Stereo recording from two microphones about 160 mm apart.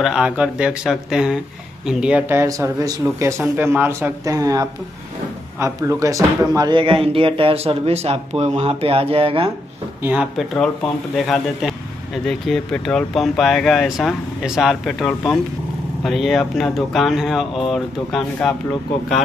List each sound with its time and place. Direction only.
0.0 s speech: 5° right (ahead or behind); by 9.5 s 35° right (ahead or behind)
10.0 s speech: 5° right (ahead or behind)